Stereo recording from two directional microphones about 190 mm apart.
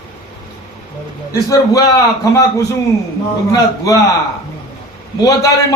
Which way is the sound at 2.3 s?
15° left (ahead or behind).